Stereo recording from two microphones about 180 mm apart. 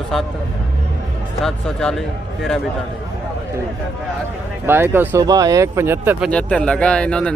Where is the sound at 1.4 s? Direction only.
5° left (ahead or behind).